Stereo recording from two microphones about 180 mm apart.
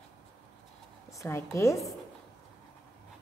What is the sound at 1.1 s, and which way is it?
Speech, 15° left (ahead or behind).